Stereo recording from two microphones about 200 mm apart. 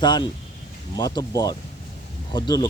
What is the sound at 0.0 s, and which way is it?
Speech, 20° left (ahead or behind).